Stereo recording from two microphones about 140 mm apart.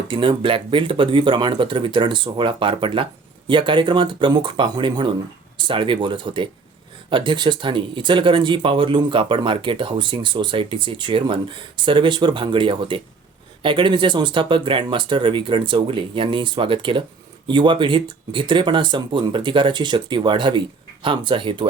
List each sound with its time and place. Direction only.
0.1 s speech: 35° right (ahead or behind)